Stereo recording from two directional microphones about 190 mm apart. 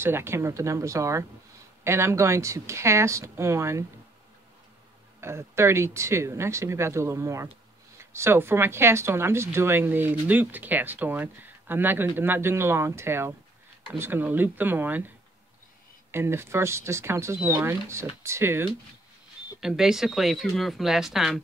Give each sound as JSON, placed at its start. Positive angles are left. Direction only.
{"t": 0.0, "sound": "speech", "side_deg": -10}
{"t": 5.2, "sound": "speech", "side_deg": -15}
{"t": 16.1, "sound": "speech", "side_deg": -10}
{"t": 19.6, "sound": "speech", "side_deg": 0}